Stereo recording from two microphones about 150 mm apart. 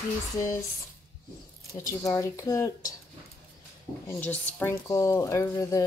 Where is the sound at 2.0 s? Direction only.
25° left (ahead or behind).